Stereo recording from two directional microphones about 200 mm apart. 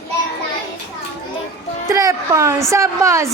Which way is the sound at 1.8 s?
15° right (ahead or behind).